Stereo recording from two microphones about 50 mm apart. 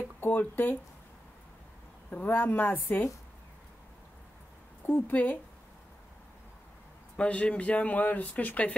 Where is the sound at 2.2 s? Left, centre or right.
Left.